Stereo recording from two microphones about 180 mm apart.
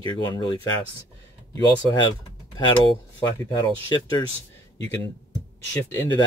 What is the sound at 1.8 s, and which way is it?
Speech, 25° left (ahead or behind).